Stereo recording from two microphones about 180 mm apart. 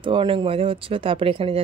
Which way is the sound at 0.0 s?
30° right (ahead or behind).